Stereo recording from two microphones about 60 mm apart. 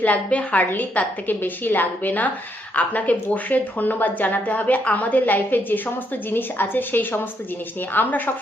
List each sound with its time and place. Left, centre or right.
0.0 s a woman's voice: left